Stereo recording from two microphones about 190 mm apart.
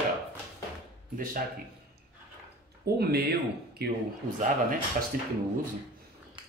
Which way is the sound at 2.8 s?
55° right (ahead or behind).